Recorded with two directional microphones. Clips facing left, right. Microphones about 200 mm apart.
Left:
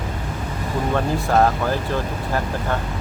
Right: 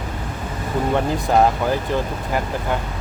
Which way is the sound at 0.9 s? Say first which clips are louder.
Right 1 dB; 15° right (ahead or behind).